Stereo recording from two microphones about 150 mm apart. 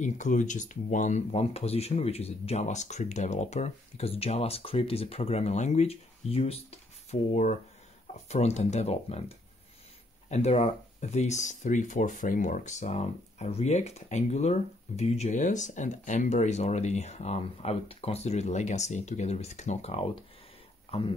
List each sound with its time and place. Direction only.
0.0 s speech: 55° left (ahead or behind)
10.3 s speech: 45° left (ahead or behind)